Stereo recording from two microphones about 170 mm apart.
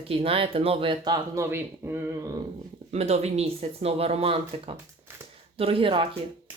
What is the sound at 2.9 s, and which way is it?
A woman's voice, 40° right (ahead or behind).